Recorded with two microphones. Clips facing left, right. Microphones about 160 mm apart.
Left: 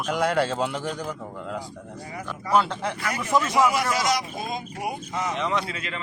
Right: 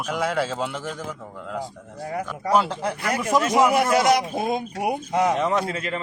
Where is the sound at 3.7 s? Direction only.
55° right (ahead or behind).